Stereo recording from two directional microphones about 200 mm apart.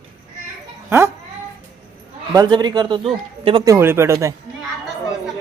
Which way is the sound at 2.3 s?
20° right (ahead or behind).